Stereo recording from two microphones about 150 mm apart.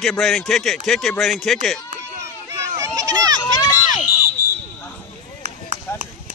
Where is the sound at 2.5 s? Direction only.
25° right (ahead or behind).